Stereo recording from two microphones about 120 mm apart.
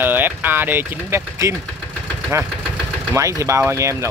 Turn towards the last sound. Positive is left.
turn(degrees=-25)  # may be behind; listen again after turning